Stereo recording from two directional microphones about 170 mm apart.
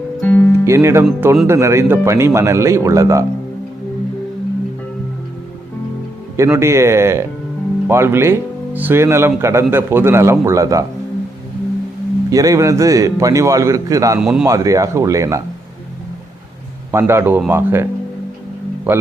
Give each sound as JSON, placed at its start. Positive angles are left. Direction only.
{"t": 0.2, "sound": "music", "side_deg": 10}
{"t": 0.6, "sound": "speech", "side_deg": -15}
{"t": 6.3, "sound": "speech", "side_deg": -15}
{"t": 12.3, "sound": "speech", "side_deg": -20}
{"t": 14.2, "sound": "speech", "side_deg": -5}
{"t": 14.4, "sound": "speech", "side_deg": -20}
{"t": 16.9, "sound": "speech", "side_deg": -15}
{"t": 18.9, "sound": "speech", "side_deg": -10}